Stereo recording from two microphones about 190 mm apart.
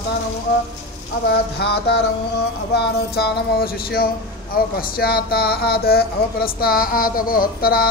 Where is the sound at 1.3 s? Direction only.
60° left (ahead or behind).